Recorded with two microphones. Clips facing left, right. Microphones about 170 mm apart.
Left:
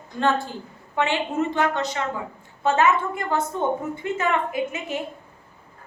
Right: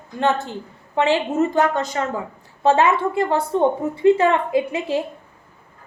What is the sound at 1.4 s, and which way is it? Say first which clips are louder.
Speech: right 2 dB; 45° right (ahead or behind).